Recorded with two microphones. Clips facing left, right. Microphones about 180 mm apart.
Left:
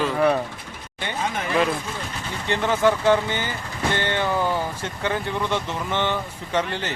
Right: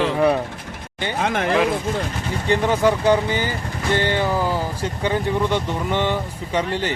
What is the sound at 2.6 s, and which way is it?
Speech, 15° right (ahead or behind).